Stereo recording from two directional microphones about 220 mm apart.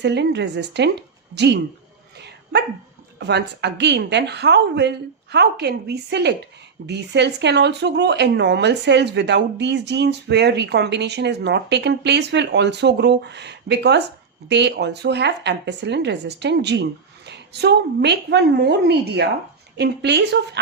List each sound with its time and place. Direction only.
0.0 s speech: 50° right (ahead or behind)
2.1 s dog: 50° right (ahead or behind)
3.2 s speech: 50° right (ahead or behind)